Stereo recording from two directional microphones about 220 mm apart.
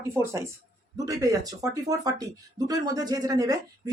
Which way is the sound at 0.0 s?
10° right (ahead or behind).